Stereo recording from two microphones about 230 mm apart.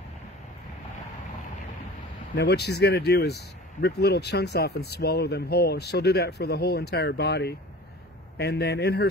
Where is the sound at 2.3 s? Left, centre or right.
Left.